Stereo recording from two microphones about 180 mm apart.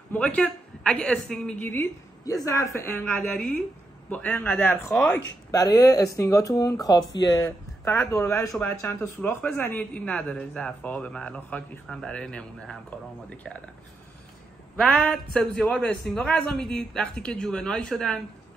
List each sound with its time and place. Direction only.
0.1 s a man's voice: 10° left (ahead or behind)
5.5 s a man's voice: 20° left (ahead or behind)
14.8 s speech: 5° left (ahead or behind)